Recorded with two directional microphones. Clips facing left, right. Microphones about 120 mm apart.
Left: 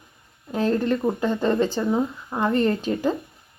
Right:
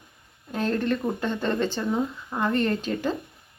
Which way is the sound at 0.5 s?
35° left (ahead or behind).